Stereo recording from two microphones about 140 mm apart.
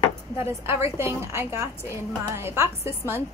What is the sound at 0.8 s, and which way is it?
A woman's voice, 20° right (ahead or behind).